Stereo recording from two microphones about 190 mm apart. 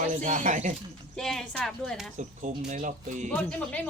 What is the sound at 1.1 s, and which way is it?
Speech, centre (ahead or behind).